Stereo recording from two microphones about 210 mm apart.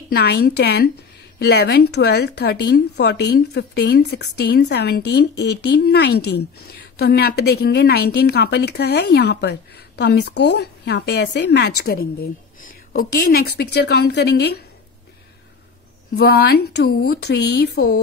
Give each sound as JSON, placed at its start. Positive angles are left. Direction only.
{"t": 0.1, "sound": "a woman's voice", "side_deg": 50}
{"t": 16.2, "sound": "a woman's voice", "side_deg": 50}